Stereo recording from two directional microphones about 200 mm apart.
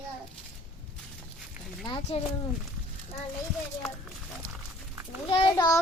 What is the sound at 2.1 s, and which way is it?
Speech, 30° left (ahead or behind).